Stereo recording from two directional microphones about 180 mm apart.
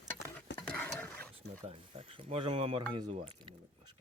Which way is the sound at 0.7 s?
10° left (ahead or behind).